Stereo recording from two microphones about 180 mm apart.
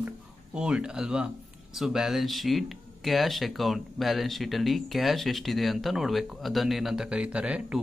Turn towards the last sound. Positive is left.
turn(degrees=-5)  # may be behind; listen again after turning